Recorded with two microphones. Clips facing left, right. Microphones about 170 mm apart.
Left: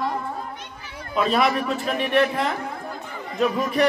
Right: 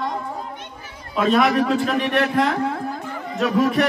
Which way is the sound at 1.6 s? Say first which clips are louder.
Right 5 dB; 90° right.